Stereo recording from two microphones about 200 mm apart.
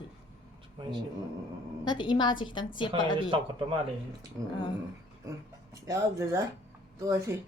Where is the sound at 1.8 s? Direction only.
20° left (ahead or behind).